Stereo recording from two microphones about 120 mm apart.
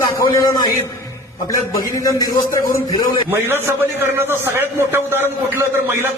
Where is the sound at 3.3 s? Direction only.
20° right (ahead or behind).